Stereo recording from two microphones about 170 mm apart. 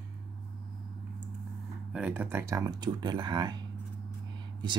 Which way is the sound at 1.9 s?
10° right (ahead or behind).